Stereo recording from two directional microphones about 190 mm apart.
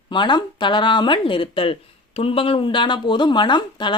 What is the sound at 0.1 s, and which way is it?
Speech, 25° left (ahead or behind).